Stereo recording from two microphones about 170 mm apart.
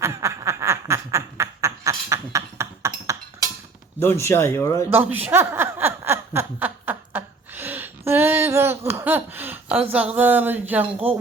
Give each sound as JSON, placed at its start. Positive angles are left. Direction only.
{"t": 0.0, "sound": "snicker", "side_deg": -15}
{"t": 4.0, "sound": "speech", "side_deg": 15}
{"t": 4.9, "sound": "chuckle", "side_deg": -10}